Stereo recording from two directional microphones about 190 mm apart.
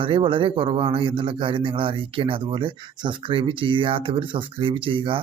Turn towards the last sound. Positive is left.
turn(degrees=-25)  # may be behind; listen again after turning